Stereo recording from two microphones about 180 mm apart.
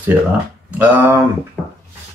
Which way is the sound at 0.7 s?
10° right (ahead or behind).